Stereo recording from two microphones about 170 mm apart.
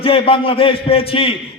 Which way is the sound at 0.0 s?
35° left (ahead or behind).